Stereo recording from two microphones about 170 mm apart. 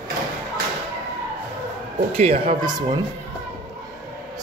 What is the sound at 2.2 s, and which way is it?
Speech, 40° right (ahead or behind).